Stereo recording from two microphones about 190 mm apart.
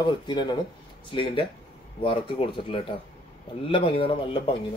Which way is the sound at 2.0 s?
25° left (ahead or behind).